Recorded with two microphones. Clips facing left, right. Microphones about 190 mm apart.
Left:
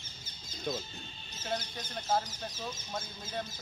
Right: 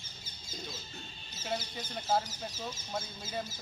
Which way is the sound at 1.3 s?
10° right (ahead or behind).